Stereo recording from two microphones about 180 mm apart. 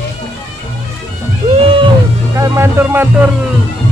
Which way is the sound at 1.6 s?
30° right (ahead or behind).